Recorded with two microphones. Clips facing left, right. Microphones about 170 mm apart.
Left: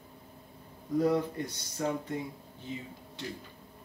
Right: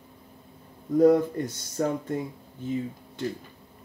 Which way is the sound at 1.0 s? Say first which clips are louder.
Right 8 dB; 50° right (ahead or behind).